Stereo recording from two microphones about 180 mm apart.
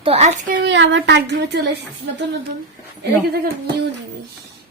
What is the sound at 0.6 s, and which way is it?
A woman's voice, 85° right.